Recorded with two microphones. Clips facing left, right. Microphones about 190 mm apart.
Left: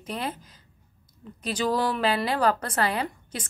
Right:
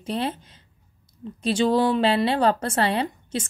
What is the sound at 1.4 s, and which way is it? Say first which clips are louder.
A woman's voice: right 6 dB; 25° right (ahead or behind).